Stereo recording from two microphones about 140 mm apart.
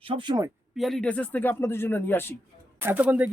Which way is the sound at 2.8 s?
15° right (ahead or behind).